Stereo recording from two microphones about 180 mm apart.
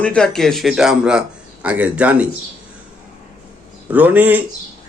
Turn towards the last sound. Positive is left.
turn(degrees=-10)  # may be behind; listen again after turning